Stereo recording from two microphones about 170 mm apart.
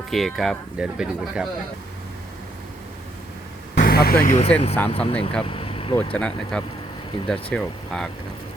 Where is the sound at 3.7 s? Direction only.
65° left (ahead or behind).